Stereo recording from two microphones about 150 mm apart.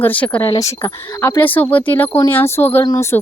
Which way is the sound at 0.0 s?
10° left (ahead or behind).